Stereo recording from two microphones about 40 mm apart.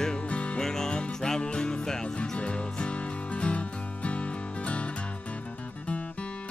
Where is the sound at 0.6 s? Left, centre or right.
Centre.